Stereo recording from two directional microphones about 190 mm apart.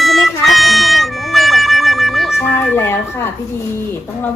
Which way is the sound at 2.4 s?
10° left (ahead or behind).